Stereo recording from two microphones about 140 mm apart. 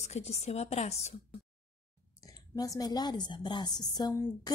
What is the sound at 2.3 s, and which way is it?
A woman's voice, 25° left (ahead or behind).